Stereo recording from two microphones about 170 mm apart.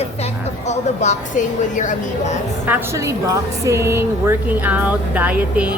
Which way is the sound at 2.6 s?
15° right (ahead or behind).